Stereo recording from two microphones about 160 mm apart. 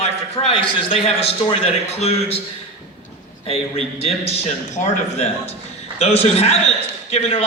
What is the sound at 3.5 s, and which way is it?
A man's voice, 40° left (ahead or behind).